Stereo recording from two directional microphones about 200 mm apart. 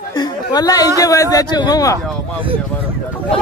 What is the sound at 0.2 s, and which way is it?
Speech, 20° left (ahead or behind).